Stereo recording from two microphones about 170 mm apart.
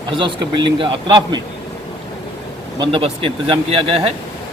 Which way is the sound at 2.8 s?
30° right (ahead or behind).